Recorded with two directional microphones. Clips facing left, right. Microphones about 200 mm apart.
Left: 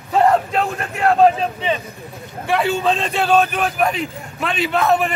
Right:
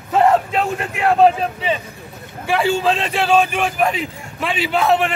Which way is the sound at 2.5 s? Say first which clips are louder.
Right 1 dB; 5° right (ahead or behind).